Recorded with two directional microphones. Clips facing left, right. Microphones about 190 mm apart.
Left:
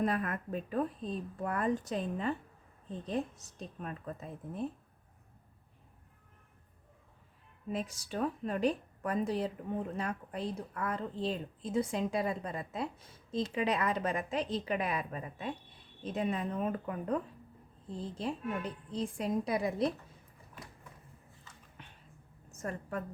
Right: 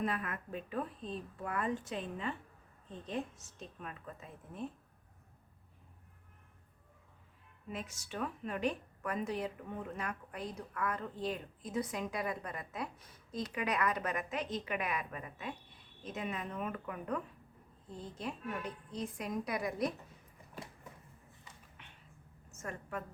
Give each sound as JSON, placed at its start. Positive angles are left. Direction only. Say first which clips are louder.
{"t": 0.0, "sound": "speech", "louder": "left 5 dB", "side_deg": 40}
{"t": 7.7, "sound": "a woman's voice", "louder": "left 6 dB", "side_deg": 35}
{"t": 21.8, "sound": "a sound", "louder": "left 6 dB", "side_deg": 40}
{"t": 22.5, "sound": "a woman's voice", "louder": "left 4 dB", "side_deg": 35}